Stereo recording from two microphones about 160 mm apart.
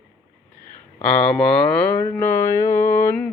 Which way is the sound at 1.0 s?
5° left (ahead or behind).